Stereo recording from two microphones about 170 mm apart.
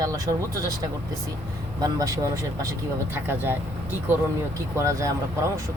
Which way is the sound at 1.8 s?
20° right (ahead or behind).